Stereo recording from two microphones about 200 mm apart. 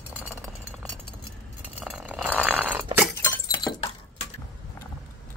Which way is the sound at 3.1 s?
15° left (ahead or behind).